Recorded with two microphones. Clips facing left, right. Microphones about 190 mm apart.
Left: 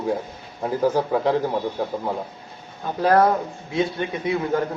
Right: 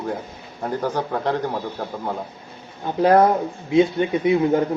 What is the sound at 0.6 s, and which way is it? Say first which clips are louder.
Speech: left 3 dB; 5° left (ahead or behind).